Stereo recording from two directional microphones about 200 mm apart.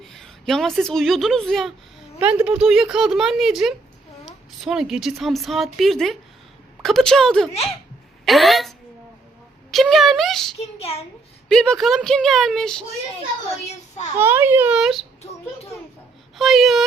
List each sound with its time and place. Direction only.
0.0 s a woman's voice: centre (ahead or behind)
9.7 s a sound: centre (ahead or behind)
10.6 s a child's voice: 30° left (ahead or behind)
11.4 s a woman's voice: 5° left (ahead or behind)
14.2 s a child's voice: 10° right (ahead or behind)
16.4 s a woman's voice: centre (ahead or behind)